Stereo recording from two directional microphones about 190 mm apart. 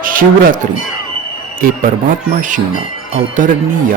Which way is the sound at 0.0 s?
45° right (ahead or behind).